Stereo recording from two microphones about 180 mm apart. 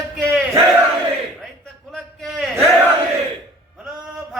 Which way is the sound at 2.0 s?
Centre (ahead or behind).